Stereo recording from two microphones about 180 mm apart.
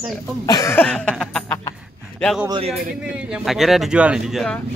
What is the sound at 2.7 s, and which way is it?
A man's voice, 5° right (ahead or behind).